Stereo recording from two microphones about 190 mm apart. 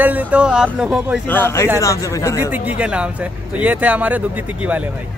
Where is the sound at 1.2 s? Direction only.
10° left (ahead or behind).